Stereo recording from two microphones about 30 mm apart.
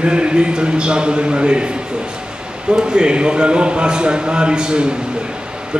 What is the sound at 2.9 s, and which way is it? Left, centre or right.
Speech, right.